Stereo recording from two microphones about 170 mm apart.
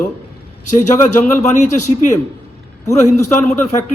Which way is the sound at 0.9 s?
50° left (ahead or behind).